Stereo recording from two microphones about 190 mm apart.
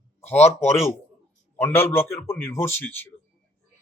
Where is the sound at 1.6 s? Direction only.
10° left (ahead or behind).